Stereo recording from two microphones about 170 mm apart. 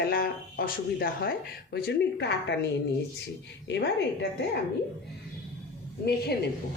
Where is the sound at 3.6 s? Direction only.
90° left.